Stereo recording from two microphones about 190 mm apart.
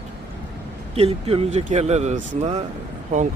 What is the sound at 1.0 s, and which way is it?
Speech, 30° right (ahead or behind).